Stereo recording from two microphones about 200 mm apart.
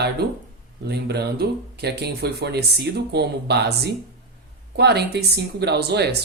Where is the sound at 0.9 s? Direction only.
55° right (ahead or behind).